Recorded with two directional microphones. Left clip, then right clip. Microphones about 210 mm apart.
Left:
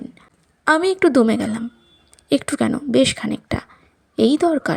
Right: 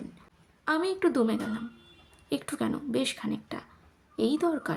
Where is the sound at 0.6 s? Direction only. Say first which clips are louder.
Left 11 dB; 40° left (ahead or behind).